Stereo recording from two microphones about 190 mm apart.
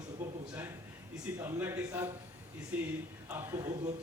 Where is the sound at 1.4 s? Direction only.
10° right (ahead or behind).